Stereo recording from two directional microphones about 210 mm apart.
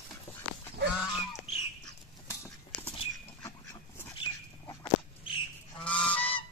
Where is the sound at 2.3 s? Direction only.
10° left (ahead or behind).